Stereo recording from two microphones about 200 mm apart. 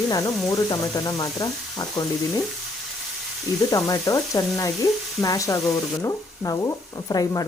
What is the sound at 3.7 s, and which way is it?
Frying, 15° left (ahead or behind).